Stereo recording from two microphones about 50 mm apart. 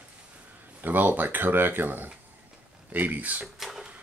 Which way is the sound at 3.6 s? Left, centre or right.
Centre.